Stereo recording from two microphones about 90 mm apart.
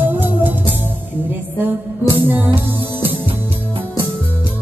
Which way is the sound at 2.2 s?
20° right (ahead or behind).